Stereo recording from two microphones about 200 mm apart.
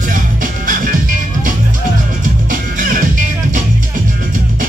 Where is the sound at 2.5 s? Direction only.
45° right (ahead or behind).